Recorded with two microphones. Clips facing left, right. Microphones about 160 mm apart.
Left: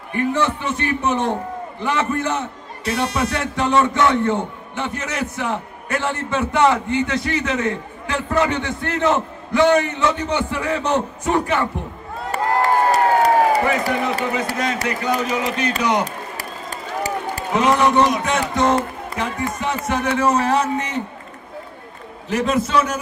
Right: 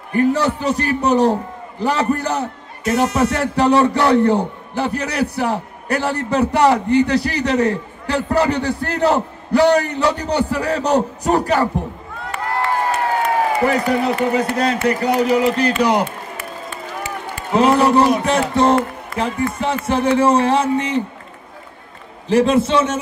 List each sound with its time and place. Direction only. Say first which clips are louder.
0.1 s a man's voice: right 4 dB; 40° right (ahead or behind)
12.3 s crowd: left 3 dB; 35° left (ahead or behind)
13.7 s a man's voice: right 3 dB; 35° right (ahead or behind)
16.3 s run: right 1 dB; 40° left (ahead or behind)
17.6 s a man's voice: right 3 dB; 30° right (ahead or behind)
22.3 s speech: right 5 dB; 30° right (ahead or behind)